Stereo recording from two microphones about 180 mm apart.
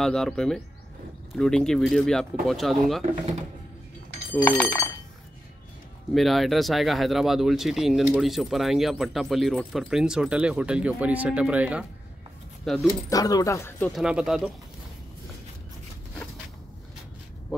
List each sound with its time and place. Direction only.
0.0 s speech: 5° left (ahead or behind)
4.3 s speech: 10° left (ahead or behind)
6.1 s speech: centre (ahead or behind)
13.1 s speech: 20° left (ahead or behind)
13.9 s speech: 5° right (ahead or behind)